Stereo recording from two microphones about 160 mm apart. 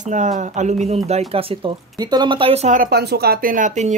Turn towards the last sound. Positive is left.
turn(degrees=-50)  # may be behind; listen again after turning